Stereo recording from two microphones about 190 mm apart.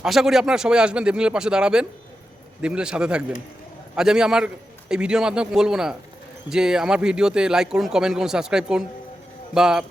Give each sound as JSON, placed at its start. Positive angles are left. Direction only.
{"t": 0.0, "sound": "speech", "side_deg": 0}